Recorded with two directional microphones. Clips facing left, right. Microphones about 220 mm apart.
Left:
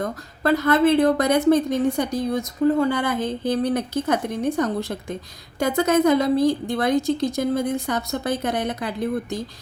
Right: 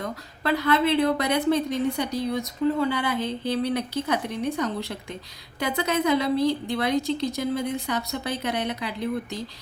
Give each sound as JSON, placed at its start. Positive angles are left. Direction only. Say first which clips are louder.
{"t": 0.0, "sound": "a woman's voice", "louder": "left 5 dB", "side_deg": 45}